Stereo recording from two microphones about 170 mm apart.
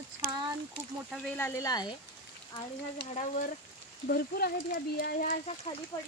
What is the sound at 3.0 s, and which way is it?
Speech, 40° left (ahead or behind).